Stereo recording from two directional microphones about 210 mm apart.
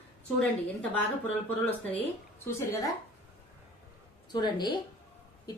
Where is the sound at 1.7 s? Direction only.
10° left (ahead or behind).